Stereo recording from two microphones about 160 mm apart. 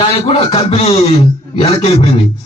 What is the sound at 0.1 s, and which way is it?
A man's voice, 40° left (ahead or behind).